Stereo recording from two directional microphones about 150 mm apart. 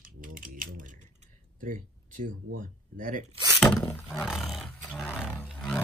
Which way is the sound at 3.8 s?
25° left (ahead or behind).